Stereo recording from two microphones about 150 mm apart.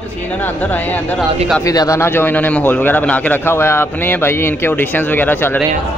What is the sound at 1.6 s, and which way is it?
A man's voice, 25° left (ahead or behind).